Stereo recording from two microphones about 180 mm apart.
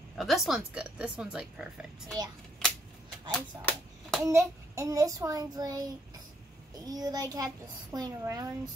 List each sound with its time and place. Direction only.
0.2 s speech: centre (ahead or behind)
3.3 s a sound: 5° left (ahead or behind)
4.2 s a child's voice: 15° right (ahead or behind)